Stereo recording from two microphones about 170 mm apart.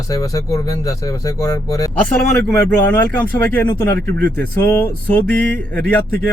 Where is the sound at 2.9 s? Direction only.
10° left (ahead or behind).